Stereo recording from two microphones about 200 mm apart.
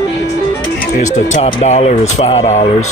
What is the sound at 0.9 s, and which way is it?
Speech, 35° left (ahead or behind).